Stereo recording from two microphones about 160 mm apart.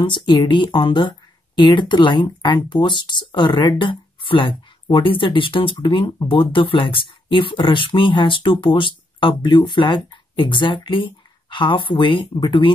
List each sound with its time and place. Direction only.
0.0 s speech: 30° left (ahead or behind)